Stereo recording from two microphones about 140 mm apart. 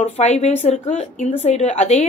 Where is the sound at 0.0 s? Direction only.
50° left (ahead or behind).